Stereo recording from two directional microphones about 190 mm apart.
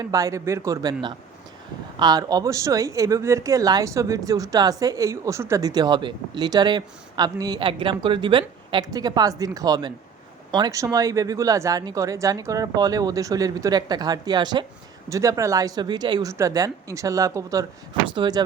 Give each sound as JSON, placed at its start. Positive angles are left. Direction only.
{"t": 0.0, "sound": "speech", "side_deg": -20}
{"t": 2.0, "sound": "speech", "side_deg": -20}